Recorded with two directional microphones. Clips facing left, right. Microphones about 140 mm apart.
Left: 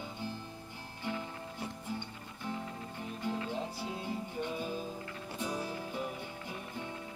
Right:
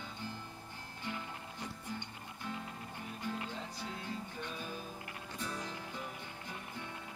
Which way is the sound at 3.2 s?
15° left (ahead or behind).